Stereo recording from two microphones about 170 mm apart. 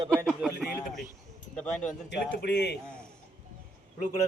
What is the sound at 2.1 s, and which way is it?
Speech, 85° left.